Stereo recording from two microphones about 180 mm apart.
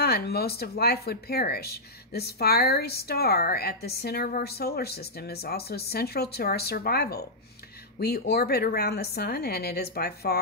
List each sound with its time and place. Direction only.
0.0 s speech: 60° left (ahead or behind)